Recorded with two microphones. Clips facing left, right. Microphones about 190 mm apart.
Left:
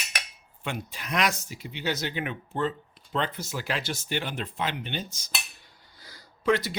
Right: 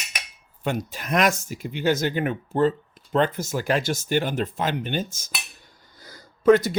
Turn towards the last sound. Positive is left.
turn(degrees=-45)  # may be behind; listen again after turning